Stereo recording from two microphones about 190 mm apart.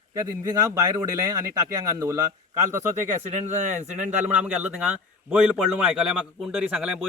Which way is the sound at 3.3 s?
40° right (ahead or behind).